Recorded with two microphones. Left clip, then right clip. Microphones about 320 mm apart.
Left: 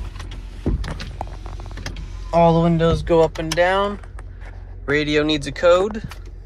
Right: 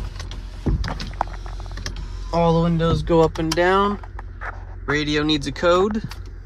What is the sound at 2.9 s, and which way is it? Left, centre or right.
Speech, centre.